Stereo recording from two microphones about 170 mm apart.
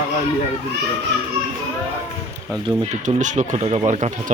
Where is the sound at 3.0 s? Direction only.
45° right (ahead or behind).